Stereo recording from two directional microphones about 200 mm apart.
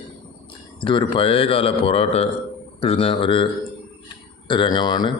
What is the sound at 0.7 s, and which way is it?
Speech, 25° left (ahead or behind).